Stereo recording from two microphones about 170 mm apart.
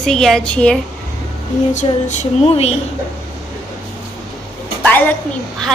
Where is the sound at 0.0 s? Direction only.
Centre (ahead or behind).